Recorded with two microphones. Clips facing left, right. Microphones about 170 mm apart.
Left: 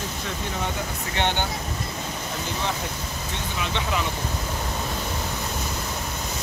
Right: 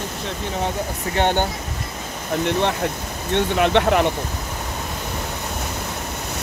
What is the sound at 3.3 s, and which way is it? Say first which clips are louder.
Speech: right 14 dB; 65° right (ahead or behind).